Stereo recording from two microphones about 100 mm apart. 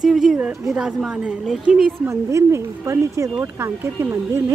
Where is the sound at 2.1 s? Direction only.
30° right (ahead or behind).